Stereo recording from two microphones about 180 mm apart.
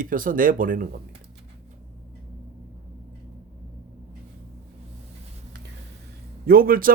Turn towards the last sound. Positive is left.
turn(degrees=-55)  # may be behind; listen again after turning